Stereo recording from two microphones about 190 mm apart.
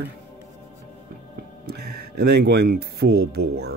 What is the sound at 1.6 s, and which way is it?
Speech, 55° right (ahead or behind).